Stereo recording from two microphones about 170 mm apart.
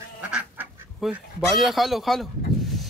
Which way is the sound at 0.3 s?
5° right (ahead or behind).